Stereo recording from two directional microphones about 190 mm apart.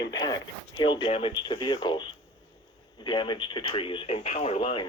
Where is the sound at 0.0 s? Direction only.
20° left (ahead or behind).